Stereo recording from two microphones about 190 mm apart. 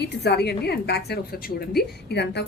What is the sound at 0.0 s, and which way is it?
A woman's voice, 60° left (ahead or behind).